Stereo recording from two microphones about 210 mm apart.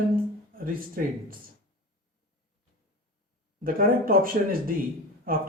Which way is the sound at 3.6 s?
45° right (ahead or behind).